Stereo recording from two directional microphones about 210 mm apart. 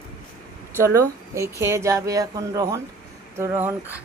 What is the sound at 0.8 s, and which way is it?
Speech, 15° right (ahead or behind).